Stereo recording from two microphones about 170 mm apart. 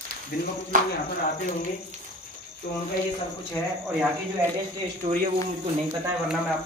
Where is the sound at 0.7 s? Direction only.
55° right (ahead or behind).